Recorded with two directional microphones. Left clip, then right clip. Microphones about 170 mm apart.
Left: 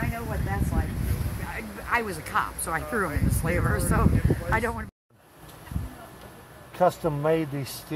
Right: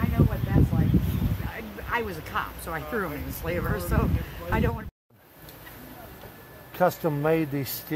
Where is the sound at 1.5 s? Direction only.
20° left (ahead or behind).